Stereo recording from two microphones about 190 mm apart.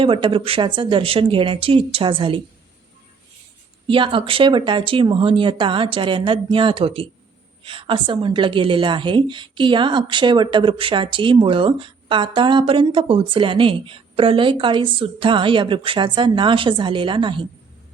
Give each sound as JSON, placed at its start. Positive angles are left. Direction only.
{"t": 0.0, "sound": "a woman's voice", "side_deg": -25}
{"t": 3.8, "sound": "a woman's voice", "side_deg": -25}